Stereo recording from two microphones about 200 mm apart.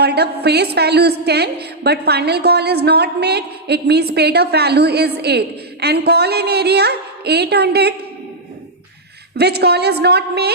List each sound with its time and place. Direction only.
0.0 s a woman's voice: 55° right (ahead or behind)
9.4 s a woman's voice: 55° right (ahead or behind)